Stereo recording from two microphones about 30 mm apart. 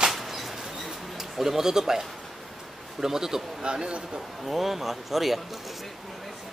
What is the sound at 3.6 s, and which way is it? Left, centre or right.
Speech, right.